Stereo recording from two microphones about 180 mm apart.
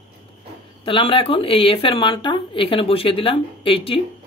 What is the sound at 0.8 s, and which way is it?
Speech, 30° left (ahead or behind).